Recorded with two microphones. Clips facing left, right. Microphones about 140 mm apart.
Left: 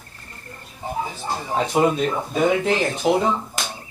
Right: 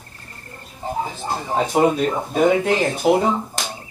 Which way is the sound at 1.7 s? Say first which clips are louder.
Right 2 dB; 40° right (ahead or behind).